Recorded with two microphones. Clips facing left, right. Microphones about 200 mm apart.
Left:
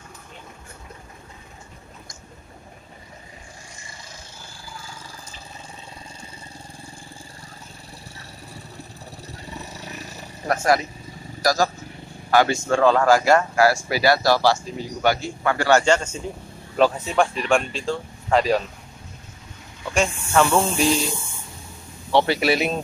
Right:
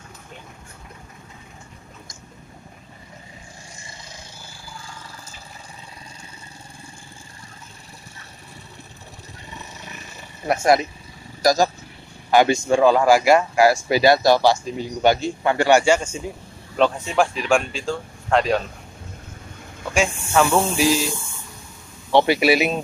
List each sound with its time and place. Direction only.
9.8 s roaring cats: 40° left (ahead or behind)
10.5 s speech: 20° right (ahead or behind)
16.7 s speech: centre (ahead or behind)
19.9 s speech: centre (ahead or behind)
22.1 s speech: 15° right (ahead or behind)